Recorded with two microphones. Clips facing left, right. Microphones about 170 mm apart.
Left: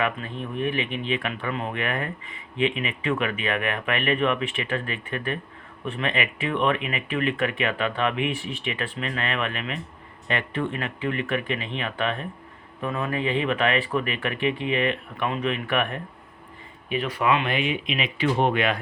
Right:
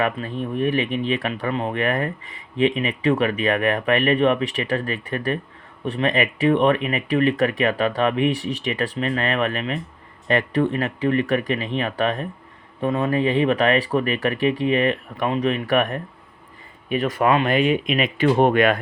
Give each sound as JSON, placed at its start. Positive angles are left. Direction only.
{"t": 0.0, "sound": "speech", "side_deg": -35}